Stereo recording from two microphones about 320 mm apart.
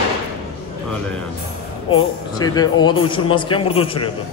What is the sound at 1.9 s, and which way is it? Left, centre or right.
A man's voice, centre.